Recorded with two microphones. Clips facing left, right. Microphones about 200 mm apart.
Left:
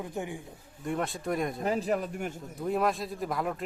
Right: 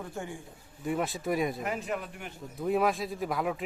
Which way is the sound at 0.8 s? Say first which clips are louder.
Right 1 dB; 5° right (ahead or behind).